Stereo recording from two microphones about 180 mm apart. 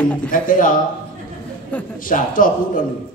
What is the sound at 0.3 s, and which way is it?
Speech, 50° left (ahead or behind).